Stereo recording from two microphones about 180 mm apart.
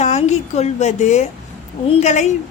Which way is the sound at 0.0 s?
40° left (ahead or behind).